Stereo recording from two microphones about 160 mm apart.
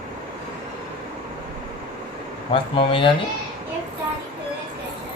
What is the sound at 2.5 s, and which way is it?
Speech, 35° left (ahead or behind).